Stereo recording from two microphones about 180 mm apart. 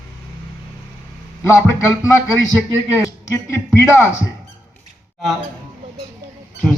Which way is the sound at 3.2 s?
15° left (ahead or behind).